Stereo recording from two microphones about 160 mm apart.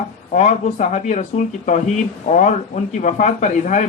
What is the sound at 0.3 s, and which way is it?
Speech, 45° left (ahead or behind).